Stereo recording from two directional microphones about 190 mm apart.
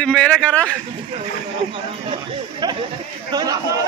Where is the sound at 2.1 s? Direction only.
25° right (ahead or behind).